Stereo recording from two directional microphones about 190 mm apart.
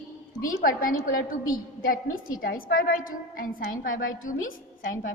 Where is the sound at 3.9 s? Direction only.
90° left.